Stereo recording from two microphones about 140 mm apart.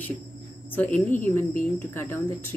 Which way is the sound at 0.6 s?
10° left (ahead or behind).